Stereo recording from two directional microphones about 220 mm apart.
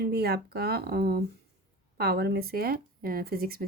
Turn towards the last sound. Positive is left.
turn(degrees=-45)  # may be behind; listen again after turning